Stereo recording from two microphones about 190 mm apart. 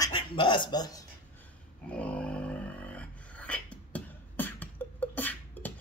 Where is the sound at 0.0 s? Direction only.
25° left (ahead or behind).